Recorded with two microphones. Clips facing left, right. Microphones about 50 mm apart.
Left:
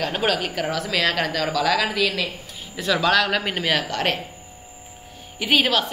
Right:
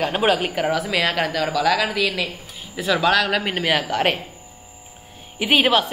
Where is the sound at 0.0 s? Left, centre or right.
Centre.